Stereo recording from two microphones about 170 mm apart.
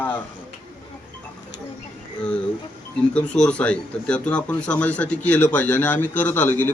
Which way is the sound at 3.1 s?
5° left (ahead or behind).